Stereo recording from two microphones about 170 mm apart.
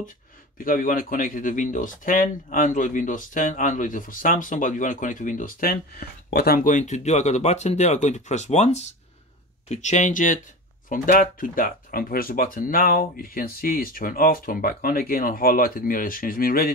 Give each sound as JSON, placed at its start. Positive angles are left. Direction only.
{"t": 0.6, "sound": "speech", "side_deg": 55}